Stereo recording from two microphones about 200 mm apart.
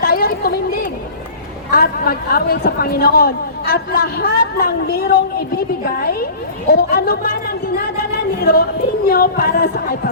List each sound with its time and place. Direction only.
0.0 s a woman's voice: 50° left (ahead or behind)